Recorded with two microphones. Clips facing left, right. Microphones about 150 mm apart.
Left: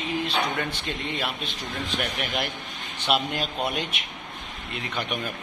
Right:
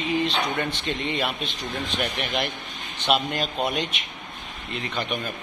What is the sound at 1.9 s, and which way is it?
A man's voice, 5° left (ahead or behind).